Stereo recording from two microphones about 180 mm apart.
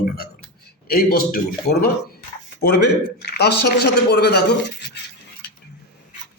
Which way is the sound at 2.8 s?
65° left (ahead or behind).